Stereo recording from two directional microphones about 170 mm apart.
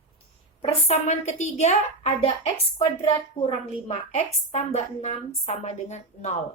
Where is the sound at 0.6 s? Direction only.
40° left (ahead or behind).